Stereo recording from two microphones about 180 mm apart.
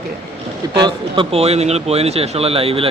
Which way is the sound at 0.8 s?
30° right (ahead or behind).